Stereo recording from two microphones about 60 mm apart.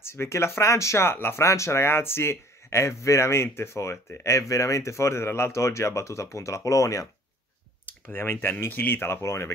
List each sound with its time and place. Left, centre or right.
0.0 s speech: left
1.1 s speech: left
1.4 s speech: left
8.1 s speech: left